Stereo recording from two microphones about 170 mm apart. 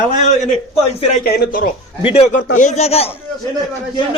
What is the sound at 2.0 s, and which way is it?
A man's voice, 35° left (ahead or behind).